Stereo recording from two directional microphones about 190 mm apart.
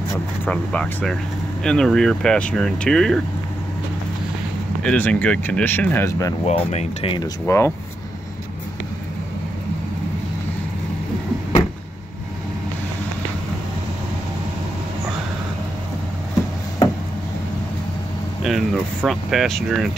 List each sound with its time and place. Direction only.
0.5 s speech: 5° left (ahead or behind)
4.8 s speech: 5° left (ahead or behind)
6.4 s speech: 35° left (ahead or behind)
7.2 s speech: 15° left (ahead or behind)
18.4 s speech: centre (ahead or behind)